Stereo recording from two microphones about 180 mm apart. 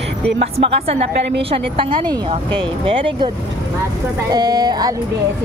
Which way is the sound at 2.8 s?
30° right (ahead or behind).